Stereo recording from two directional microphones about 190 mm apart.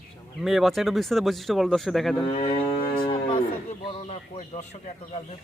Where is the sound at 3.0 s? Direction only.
25° left (ahead or behind).